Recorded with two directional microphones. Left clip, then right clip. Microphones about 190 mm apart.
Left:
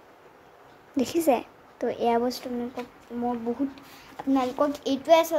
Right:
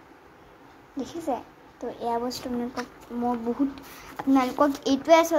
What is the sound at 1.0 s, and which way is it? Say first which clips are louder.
A woman's voice: left 7 dB; 50° left (ahead or behind).